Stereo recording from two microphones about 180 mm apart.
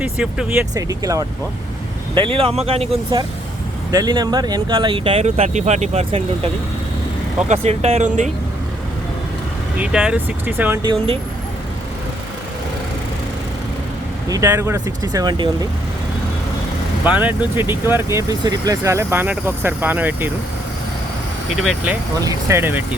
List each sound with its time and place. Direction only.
0.0 s speech: 5° right (ahead or behind)
0.7 s speech: 20° right (ahead or behind)
2.1 s speech: 30° right (ahead or behind)
9.7 s speech: 5° right (ahead or behind)
10.8 s speech: 35° right (ahead or behind)
14.3 s speech: 15° right (ahead or behind)
17.0 s speech: 10° right (ahead or behind)
21.5 s speech: centre (ahead or behind)
22.2 s speech: 20° right (ahead or behind)